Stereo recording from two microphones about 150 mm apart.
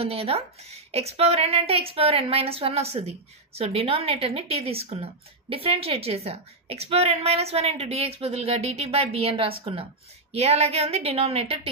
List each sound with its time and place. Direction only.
0.0 s a woman's voice: 40° right (ahead or behind)